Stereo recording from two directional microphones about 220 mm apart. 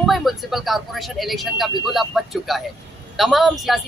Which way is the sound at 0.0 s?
Centre (ahead or behind).